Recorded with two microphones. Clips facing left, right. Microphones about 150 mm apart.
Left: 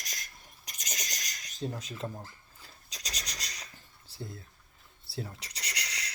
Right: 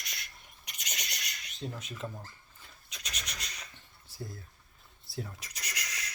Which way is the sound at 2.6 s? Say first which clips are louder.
Left 2 dB; 35° left (ahead or behind).